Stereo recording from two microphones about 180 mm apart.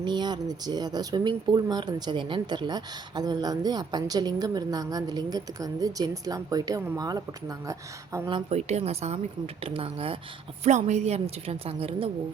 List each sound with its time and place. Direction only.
0.0 s speech: 25° right (ahead or behind)
8.4 s a woman's voice: 35° right (ahead or behind)